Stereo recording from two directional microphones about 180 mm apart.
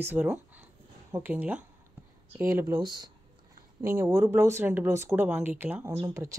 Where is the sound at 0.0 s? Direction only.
10° right (ahead or behind).